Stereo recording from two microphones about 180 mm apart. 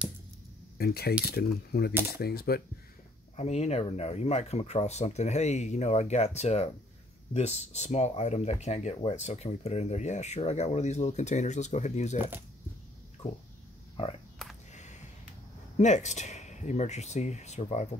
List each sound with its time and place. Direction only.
0.7 s speech: 60° left (ahead or behind)
3.3 s speech: 35° left (ahead or behind)
14.7 s a sound: 40° left (ahead or behind)
15.8 s speech: 40° left (ahead or behind)